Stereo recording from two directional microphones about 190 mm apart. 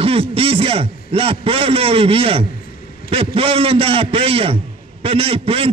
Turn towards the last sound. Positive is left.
turn(degrees=-30)  # may be behind; listen again after turning